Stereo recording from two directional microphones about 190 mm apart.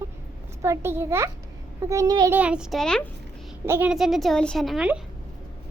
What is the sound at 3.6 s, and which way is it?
A child's voice, 10° right (ahead or behind).